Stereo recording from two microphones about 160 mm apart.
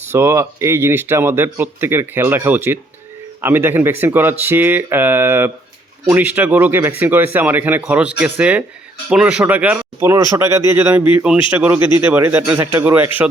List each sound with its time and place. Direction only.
0.1 s speech: 15° right (ahead or behind)